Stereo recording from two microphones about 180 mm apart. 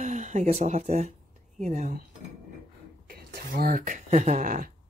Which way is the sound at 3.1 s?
55° right (ahead or behind).